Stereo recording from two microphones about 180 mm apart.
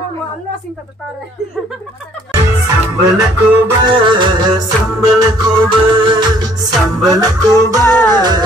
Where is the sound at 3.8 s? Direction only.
25° right (ahead or behind).